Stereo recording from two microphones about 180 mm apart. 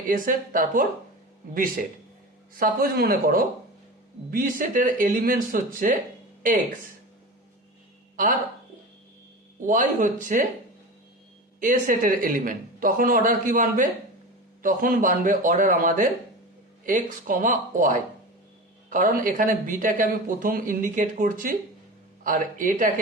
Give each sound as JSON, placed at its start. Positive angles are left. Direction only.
{"t": 0.1, "sound": "speech", "side_deg": -50}
{"t": 8.1, "sound": "speech", "side_deg": -50}
{"t": 9.6, "sound": "speech", "side_deg": -45}
{"t": 11.6, "sound": "speech", "side_deg": -50}